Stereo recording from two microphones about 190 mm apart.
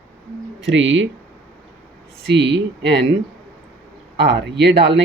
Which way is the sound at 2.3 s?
70° right (ahead or behind).